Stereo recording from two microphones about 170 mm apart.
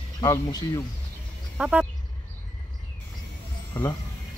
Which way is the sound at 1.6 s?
5° right (ahead or behind).